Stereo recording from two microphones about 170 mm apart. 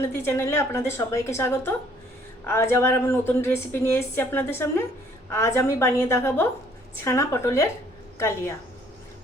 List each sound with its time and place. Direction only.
0.1 s a woman's voice: 15° left (ahead or behind)